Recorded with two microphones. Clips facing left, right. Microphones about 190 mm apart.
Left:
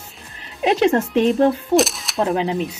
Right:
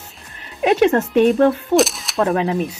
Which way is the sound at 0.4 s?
30° left (ahead or behind).